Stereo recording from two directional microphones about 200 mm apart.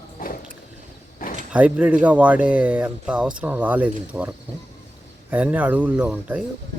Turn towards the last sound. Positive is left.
turn(degrees=-5)  # may be behind; listen again after turning